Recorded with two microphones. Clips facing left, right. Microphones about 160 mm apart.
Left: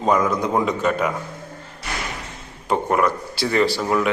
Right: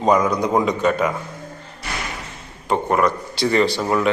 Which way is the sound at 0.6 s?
5° left (ahead or behind).